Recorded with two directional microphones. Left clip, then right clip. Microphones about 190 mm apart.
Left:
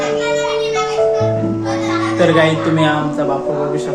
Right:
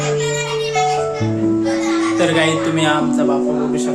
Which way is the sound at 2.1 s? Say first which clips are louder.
Left 5 dB; centre (ahead or behind).